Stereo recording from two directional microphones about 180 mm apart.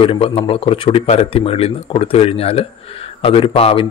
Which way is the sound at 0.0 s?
30° left (ahead or behind).